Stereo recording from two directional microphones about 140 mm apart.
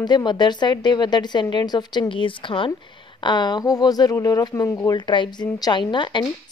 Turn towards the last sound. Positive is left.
turn(degrees=35)  # may be behind; listen again after turning